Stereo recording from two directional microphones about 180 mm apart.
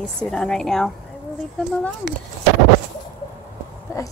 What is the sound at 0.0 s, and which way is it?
A woman's voice, 5° left (ahead or behind).